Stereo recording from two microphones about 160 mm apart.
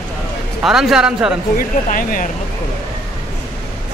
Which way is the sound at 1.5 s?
60° left (ahead or behind).